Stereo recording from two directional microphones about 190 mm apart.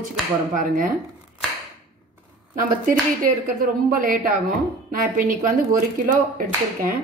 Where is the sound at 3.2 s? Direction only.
45° right (ahead or behind).